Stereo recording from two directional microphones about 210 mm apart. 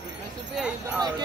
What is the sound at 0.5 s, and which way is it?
Jingle bell, 5° right (ahead or behind).